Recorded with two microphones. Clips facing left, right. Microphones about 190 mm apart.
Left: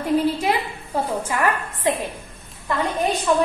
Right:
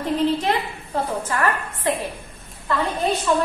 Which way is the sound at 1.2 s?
15° left (ahead or behind).